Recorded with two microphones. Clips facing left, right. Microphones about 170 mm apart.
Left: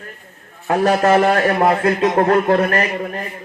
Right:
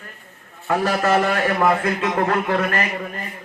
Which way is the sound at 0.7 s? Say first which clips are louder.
Left 5 dB; 50° left (ahead or behind).